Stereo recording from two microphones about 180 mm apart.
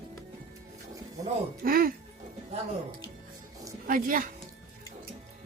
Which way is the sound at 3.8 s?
50° right (ahead or behind).